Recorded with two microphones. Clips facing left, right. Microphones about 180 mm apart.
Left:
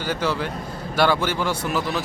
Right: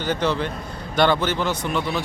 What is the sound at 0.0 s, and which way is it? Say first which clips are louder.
A man's voice: right 2 dB; 10° left (ahead or behind).